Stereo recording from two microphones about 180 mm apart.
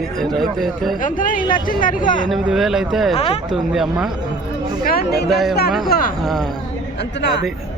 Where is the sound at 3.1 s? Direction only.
35° left (ahead or behind).